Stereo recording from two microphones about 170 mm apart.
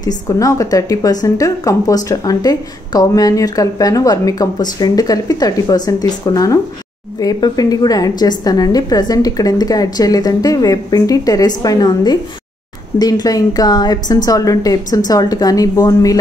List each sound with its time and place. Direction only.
0.0 s a woman's voice: 20° left (ahead or behind)